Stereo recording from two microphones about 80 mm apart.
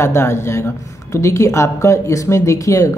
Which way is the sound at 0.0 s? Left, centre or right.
Left.